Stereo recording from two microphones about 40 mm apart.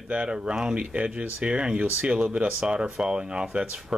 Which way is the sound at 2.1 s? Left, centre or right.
Right.